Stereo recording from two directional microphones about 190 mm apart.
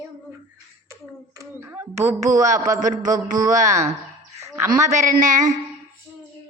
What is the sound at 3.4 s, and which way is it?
Speech, 15° right (ahead or behind).